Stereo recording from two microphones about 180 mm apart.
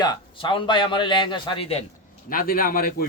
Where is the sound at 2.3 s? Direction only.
50° left (ahead or behind).